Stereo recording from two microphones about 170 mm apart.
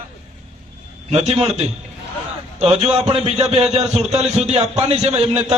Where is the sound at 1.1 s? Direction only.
40° right (ahead or behind).